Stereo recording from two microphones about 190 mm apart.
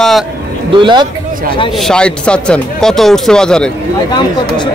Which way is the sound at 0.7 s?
25° right (ahead or behind).